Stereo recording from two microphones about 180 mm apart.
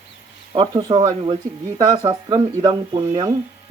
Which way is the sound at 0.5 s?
25° right (ahead or behind).